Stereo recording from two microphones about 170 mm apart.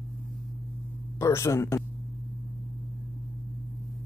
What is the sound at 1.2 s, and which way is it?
Speech, 15° left (ahead or behind).